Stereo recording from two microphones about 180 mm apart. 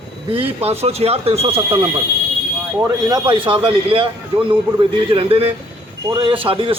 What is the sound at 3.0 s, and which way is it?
Speech, 25° right (ahead or behind).